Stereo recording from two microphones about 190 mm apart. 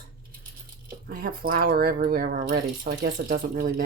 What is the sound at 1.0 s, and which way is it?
Speech, 50° right (ahead or behind).